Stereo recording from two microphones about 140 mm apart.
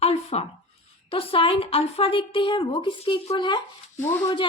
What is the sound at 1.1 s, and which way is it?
A woman's voice, 40° left (ahead or behind).